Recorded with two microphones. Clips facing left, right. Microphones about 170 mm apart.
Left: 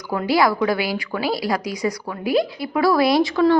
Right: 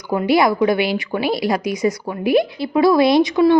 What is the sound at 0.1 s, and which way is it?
A woman's voice, 20° right (ahead or behind).